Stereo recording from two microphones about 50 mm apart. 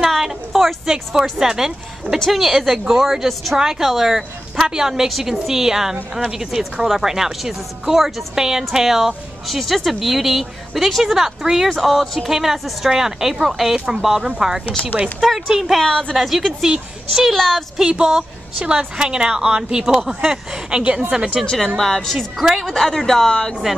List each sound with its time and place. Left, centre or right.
0.0 s a woman's voice: centre
2.1 s a woman's voice: centre
14.9 s speech: right
15.4 s a woman's voice: centre
15.8 s a woman's voice: centre
16.1 s a woman's voice: centre
17.3 s a woman's voice: centre
17.7 s a woman's voice: centre
21.6 s speech: centre